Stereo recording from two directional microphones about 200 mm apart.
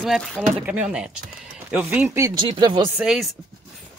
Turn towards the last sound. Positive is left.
turn(degrees=0)  # may be behind; listen again after turning